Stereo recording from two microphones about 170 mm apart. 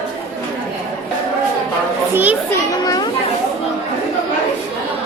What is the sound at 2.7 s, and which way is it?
Children playing, 20° left (ahead or behind).